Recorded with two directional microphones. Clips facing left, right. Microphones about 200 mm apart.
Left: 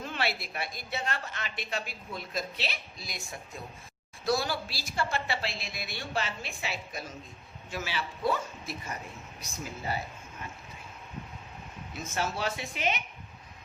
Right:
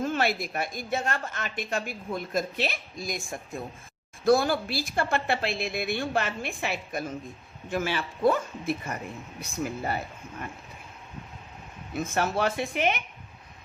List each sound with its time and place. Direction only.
0.0 s a woman's voice: 45° right (ahead or behind)
11.9 s a woman's voice: 55° right (ahead or behind)